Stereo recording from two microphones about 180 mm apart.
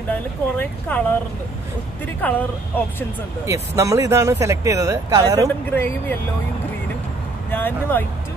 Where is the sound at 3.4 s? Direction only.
15° right (ahead or behind).